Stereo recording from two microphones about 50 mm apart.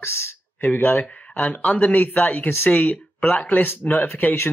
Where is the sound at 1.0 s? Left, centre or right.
Left.